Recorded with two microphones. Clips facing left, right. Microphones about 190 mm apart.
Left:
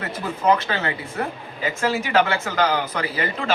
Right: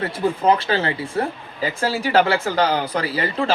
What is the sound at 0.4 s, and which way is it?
Speech, 30° right (ahead or behind).